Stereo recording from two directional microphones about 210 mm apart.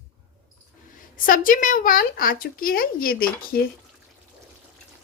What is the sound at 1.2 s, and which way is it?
Speech, 40° left (ahead or behind).